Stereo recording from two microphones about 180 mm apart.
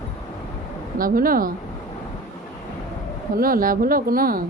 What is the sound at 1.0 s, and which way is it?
Speech, 50° right (ahead or behind).